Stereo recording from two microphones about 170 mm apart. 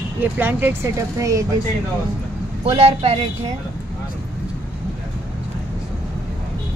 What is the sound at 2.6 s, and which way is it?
Speech, 35° right (ahead or behind).